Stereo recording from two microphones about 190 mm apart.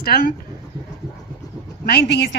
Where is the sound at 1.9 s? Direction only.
60° left (ahead or behind).